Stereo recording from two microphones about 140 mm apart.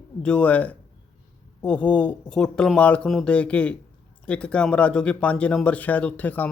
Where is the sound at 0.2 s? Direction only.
10° left (ahead or behind).